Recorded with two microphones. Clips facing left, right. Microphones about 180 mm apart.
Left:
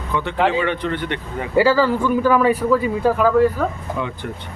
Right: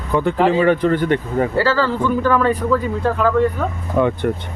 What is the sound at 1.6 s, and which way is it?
Speech, 15° left (ahead or behind).